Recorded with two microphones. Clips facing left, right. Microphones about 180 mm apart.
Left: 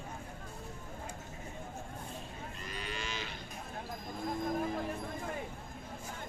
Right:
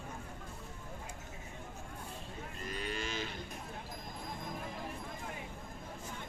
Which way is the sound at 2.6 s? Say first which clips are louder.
Right 3 dB; 45° right (ahead or behind).